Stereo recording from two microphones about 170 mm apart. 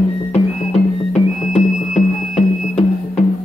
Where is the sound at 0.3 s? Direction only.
40° left (ahead or behind).